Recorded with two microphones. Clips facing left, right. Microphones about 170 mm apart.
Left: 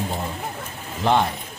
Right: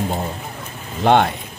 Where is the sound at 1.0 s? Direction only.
65° right (ahead or behind).